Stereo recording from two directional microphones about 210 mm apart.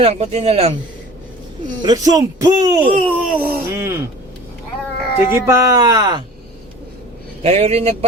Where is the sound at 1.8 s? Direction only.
20° right (ahead or behind).